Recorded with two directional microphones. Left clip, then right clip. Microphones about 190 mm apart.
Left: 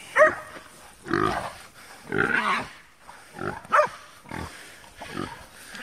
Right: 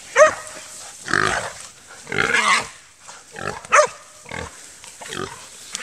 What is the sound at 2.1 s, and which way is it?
Pig, 20° right (ahead or behind).